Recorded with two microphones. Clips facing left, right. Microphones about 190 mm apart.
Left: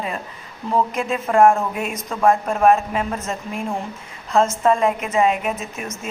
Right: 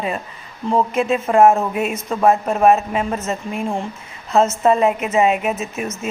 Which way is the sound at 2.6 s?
5° right (ahead or behind).